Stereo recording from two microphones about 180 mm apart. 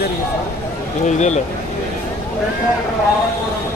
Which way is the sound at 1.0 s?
40° left (ahead or behind).